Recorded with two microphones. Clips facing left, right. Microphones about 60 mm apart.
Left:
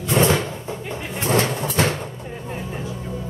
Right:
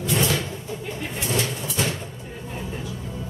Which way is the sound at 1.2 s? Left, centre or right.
Left.